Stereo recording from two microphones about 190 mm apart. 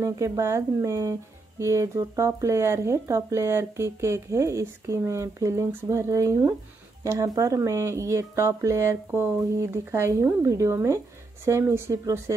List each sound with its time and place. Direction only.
0.0 s speech: 15° right (ahead or behind)